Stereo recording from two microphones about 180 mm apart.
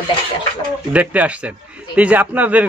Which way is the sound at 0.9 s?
10° right (ahead or behind).